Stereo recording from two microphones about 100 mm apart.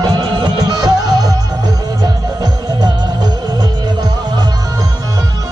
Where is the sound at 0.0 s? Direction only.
45° right (ahead or behind).